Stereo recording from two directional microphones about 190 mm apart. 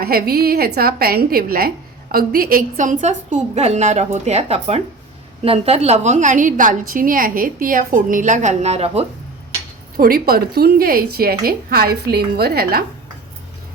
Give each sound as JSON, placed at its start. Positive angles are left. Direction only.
{"t": 0.0, "sound": "a woman's voice", "side_deg": -50}
{"t": 10.0, "sound": "a woman's voice", "side_deg": -50}